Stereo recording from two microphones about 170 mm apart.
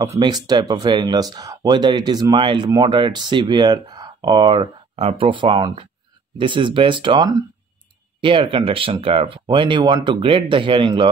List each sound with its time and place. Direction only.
0.0 s speech: 20° right (ahead or behind)